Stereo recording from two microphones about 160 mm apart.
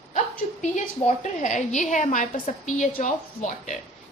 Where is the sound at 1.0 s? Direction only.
50° left (ahead or behind).